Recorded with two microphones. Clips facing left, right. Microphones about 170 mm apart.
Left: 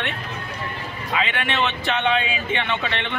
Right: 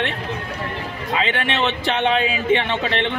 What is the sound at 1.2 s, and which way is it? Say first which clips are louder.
A woman's voice: right 2 dB; 30° right (ahead or behind).